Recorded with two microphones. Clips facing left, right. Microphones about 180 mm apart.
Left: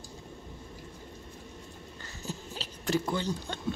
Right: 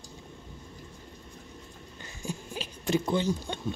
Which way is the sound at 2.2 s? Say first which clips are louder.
Right 3 dB; 15° right (ahead or behind).